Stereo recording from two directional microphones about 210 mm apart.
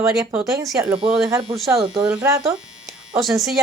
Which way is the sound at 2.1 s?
5° right (ahead or behind).